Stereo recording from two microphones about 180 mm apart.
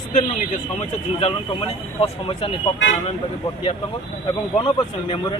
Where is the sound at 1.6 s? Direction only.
35° left (ahead or behind).